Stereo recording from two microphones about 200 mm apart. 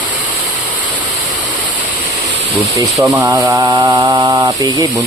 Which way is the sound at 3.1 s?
10° right (ahead or behind).